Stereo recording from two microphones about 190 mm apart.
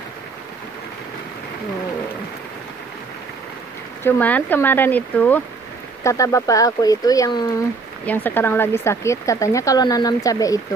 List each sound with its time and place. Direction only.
4.0 s speech: 10° left (ahead or behind)
8.0 s speech: 10° left (ahead or behind)